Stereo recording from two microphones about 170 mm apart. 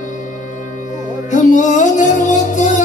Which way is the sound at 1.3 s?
45° left (ahead or behind).